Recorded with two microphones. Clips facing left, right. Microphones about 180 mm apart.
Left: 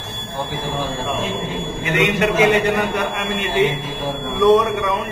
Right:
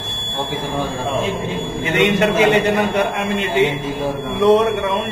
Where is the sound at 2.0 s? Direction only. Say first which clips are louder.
Right 2 dB; 25° right (ahead or behind).